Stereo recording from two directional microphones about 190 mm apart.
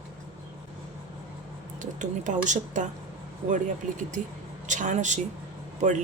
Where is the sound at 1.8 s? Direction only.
40° right (ahead or behind).